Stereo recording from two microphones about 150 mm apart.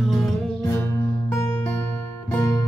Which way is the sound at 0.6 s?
20° left (ahead or behind).